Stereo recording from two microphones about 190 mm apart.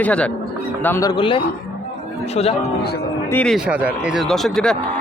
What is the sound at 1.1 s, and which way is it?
A man's voice, 25° left (ahead or behind).